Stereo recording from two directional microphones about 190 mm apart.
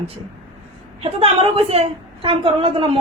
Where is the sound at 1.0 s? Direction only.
30° right (ahead or behind).